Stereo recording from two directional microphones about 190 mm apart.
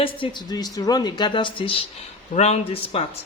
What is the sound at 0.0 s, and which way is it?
A woman's voice, 25° left (ahead or behind).